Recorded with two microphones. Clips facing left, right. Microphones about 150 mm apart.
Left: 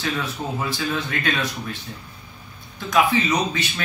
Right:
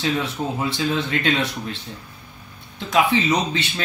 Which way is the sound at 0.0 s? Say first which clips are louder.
Right 3 dB; 25° right (ahead or behind).